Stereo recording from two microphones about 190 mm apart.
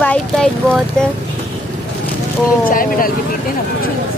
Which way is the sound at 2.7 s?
45° left (ahead or behind).